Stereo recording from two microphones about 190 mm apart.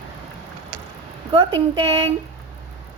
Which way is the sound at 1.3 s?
25° right (ahead or behind).